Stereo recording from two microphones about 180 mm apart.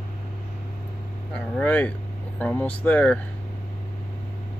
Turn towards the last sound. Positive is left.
turn(degrees=10)  # may be behind; listen again after turning